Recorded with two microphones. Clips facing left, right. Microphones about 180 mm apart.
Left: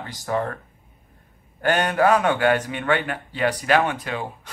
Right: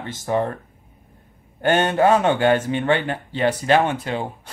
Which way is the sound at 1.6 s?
25° right (ahead or behind).